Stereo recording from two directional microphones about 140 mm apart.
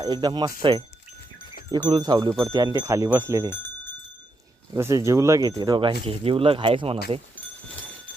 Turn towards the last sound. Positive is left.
turn(degrees=-40)  # may be behind; listen again after turning